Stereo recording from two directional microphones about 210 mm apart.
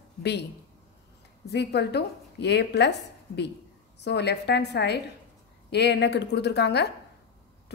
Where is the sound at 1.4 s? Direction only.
55° left (ahead or behind).